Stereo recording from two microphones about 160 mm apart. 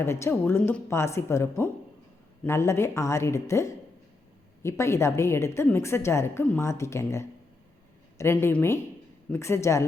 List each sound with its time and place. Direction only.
0.0 s a woman's voice: 15° left (ahead or behind)